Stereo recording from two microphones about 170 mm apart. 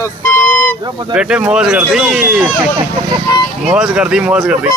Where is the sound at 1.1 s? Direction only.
5° right (ahead or behind).